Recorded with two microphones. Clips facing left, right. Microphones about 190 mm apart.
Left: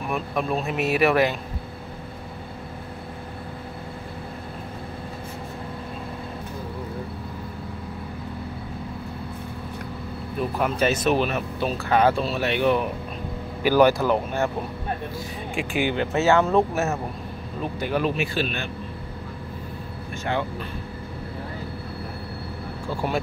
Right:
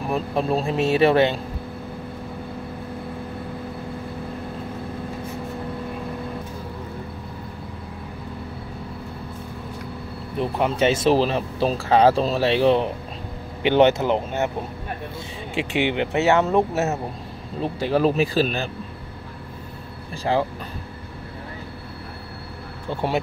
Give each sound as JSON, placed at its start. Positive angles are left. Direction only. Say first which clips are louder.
{"t": 0.1, "sound": "speech", "louder": "right 3 dB", "side_deg": -30}
{"t": 10.4, "sound": "speech", "louder": "right 3 dB", "side_deg": -25}
{"t": 15.5, "sound": "speech", "louder": "right 2 dB", "side_deg": -25}
{"t": 20.3, "sound": "speech", "louder": "right 5 dB", "side_deg": -30}
{"t": 22.8, "sound": "speech", "louder": "right 2 dB", "side_deg": -20}